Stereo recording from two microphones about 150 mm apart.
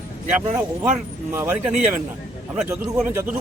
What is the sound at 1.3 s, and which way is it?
A man's voice, 15° right (ahead or behind).